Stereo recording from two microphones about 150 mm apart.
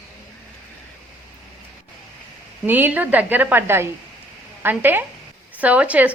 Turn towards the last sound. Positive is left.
turn(degrees=-10)  # may be behind; listen again after turning